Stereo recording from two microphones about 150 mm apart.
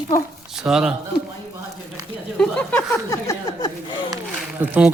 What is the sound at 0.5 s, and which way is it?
Speech, 5° right (ahead or behind).